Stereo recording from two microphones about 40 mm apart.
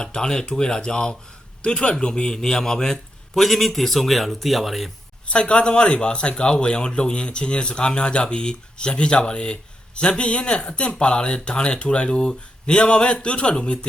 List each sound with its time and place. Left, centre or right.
0.0 s a man's voice: centre
5.3 s a man's voice: left